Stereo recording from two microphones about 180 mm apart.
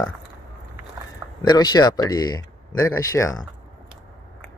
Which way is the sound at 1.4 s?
25° left (ahead or behind).